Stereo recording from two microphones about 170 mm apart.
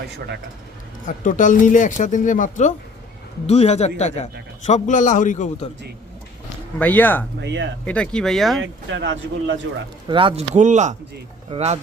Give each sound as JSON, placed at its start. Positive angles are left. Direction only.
{"t": 1.0, "sound": "speech", "side_deg": 50}
{"t": 6.7, "sound": "speech", "side_deg": 10}
{"t": 7.4, "sound": "speech", "side_deg": -90}
{"t": 7.9, "sound": "speech", "side_deg": 5}
{"t": 8.9, "sound": "speech", "side_deg": -90}
{"t": 10.1, "sound": "speech", "side_deg": -30}